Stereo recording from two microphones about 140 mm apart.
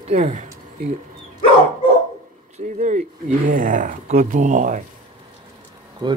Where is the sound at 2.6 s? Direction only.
60° right (ahead or behind).